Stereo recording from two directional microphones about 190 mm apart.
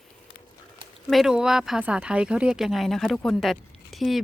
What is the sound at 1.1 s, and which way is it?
Speech, centre (ahead or behind).